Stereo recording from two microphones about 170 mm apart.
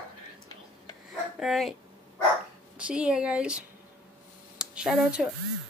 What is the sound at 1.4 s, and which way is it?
Speech, centre (ahead or behind).